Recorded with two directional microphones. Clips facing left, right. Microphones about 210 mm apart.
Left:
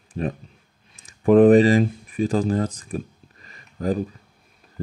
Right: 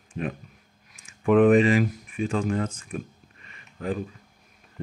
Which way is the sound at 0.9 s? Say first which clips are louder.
Left 5 dB; 35° left (ahead or behind).